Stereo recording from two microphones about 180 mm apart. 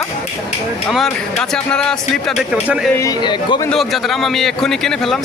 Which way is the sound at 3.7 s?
Centre (ahead or behind).